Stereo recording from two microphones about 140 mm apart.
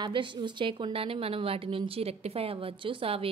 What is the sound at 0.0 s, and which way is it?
A woman's voice, 35° right (ahead or behind).